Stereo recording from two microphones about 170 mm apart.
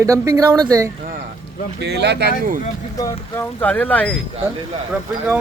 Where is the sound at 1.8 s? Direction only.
80° right; by 2.6 s 65° right (ahead or behind).